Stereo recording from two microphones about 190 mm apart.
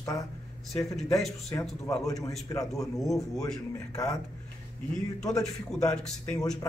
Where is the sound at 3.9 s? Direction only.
15° left (ahead or behind).